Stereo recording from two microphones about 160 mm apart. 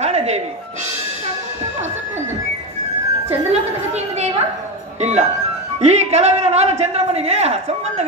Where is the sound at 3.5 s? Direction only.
40° right (ahead or behind).